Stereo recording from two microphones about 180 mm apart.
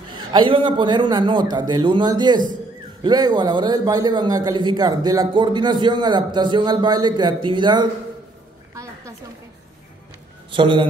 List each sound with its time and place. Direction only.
0.1 s a man's voice: 25° right (ahead or behind)
10.5 s a man's voice: 25° right (ahead or behind)